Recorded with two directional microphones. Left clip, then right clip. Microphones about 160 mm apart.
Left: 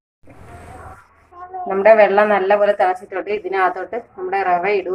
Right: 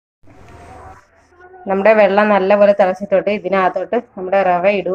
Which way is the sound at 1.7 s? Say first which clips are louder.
Even; 55° right (ahead or behind).